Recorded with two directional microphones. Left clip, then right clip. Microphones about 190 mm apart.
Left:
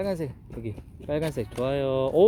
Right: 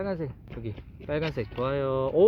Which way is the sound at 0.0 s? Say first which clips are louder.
Left 3 dB; 15° left (ahead or behind).